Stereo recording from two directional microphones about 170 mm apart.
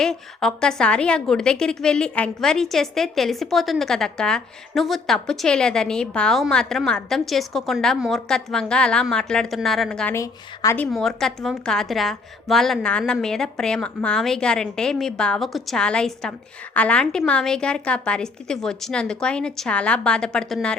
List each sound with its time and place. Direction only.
0.0 s a woman's voice: 5° left (ahead or behind)
10.2 s a woman's voice: 15° left (ahead or behind)
10.9 s a woman's voice: centre (ahead or behind)